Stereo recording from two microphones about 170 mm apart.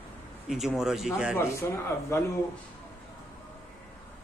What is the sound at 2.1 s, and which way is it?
Speech, 15° left (ahead or behind).